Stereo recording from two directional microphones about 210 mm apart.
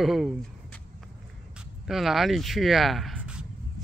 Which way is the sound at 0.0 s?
Centre (ahead or behind).